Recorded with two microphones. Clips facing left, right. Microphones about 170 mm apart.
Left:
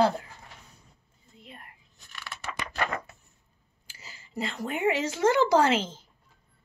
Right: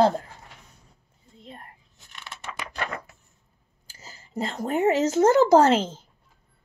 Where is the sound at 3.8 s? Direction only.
40° right (ahead or behind).